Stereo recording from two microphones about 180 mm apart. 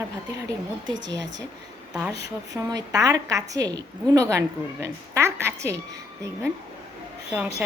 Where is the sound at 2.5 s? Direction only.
20° right (ahead or behind).